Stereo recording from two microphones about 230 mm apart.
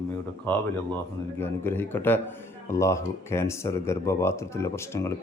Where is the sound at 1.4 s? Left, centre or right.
Centre.